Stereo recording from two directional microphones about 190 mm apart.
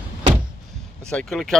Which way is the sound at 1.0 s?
5° left (ahead or behind).